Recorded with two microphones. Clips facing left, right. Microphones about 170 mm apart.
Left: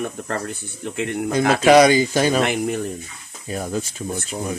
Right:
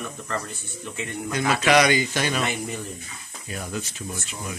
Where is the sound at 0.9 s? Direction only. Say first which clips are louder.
Left 8 dB; 75° left (ahead or behind).